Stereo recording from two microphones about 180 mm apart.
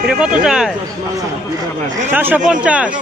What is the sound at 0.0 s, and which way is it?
Speech, 5° right (ahead or behind).